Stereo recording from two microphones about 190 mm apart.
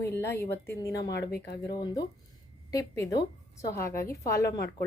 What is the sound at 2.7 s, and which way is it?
A woman's voice, 20° left (ahead or behind).